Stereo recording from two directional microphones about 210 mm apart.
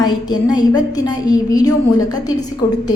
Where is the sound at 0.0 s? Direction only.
20° left (ahead or behind).